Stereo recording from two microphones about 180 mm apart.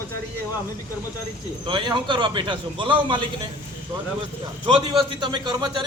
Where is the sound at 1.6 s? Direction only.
25° right (ahead or behind).